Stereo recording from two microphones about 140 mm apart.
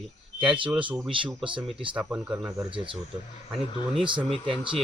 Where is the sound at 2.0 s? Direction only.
10° right (ahead or behind).